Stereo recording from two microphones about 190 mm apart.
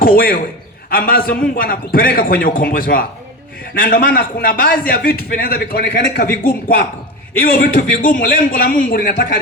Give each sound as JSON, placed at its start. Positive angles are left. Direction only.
{"t": 0.0, "sound": "a man's voice", "side_deg": 50}